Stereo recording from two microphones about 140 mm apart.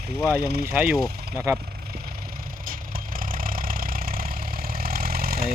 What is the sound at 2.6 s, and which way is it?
Vehicle, 90° right.